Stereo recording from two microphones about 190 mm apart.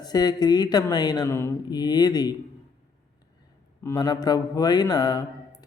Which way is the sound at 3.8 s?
15° left (ahead or behind).